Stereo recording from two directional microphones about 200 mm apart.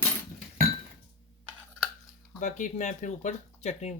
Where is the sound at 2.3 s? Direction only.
40° left (ahead or behind).